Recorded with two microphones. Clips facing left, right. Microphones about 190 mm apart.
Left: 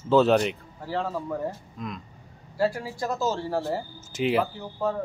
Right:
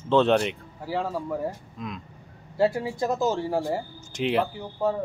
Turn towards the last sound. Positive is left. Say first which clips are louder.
# right 2 dB
turn(degrees=-15)  # may be behind; listen again after turning